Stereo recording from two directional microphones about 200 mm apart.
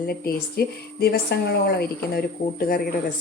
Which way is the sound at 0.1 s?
50° left (ahead or behind).